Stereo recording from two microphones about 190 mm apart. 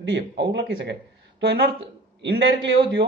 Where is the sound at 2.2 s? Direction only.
65° right (ahead or behind).